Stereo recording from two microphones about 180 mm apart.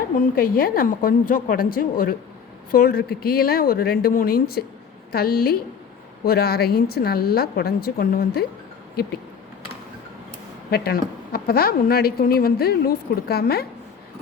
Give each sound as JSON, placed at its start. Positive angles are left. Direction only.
{"t": 0.3, "sound": "a woman's voice", "side_deg": 55}
{"t": 10.7, "sound": "a woman's voice", "side_deg": 60}